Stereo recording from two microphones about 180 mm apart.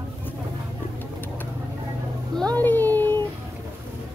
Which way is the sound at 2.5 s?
10° left (ahead or behind).